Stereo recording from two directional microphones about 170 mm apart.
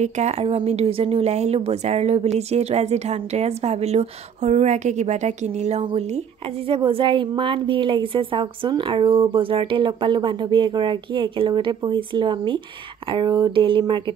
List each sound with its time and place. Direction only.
0.0 s a woman's voice: 40° right (ahead or behind)